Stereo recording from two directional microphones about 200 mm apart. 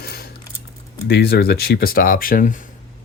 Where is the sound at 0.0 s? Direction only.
50° left (ahead or behind).